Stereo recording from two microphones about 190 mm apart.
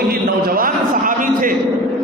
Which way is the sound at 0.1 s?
50° right (ahead or behind).